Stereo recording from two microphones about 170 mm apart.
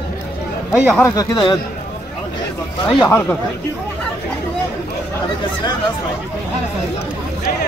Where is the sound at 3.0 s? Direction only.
15° left (ahead or behind).